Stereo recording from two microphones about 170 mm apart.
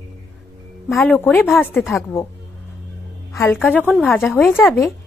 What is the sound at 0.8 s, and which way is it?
Speech, centre (ahead or behind).